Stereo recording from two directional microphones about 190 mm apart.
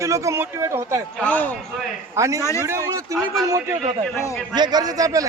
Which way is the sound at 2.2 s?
15° right (ahead or behind).